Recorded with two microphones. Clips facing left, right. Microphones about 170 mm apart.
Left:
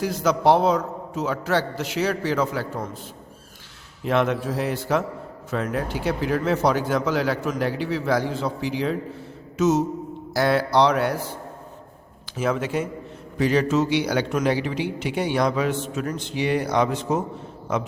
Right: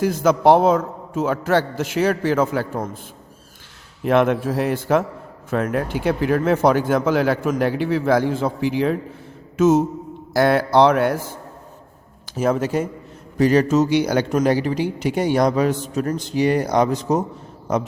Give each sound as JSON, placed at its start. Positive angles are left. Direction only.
{"t": 0.0, "sound": "speech", "side_deg": -50}
{"t": 4.0, "sound": "speech", "side_deg": -55}
{"t": 12.4, "sound": "speech", "side_deg": -40}